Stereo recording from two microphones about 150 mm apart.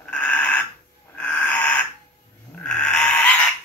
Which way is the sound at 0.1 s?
10° left (ahead or behind).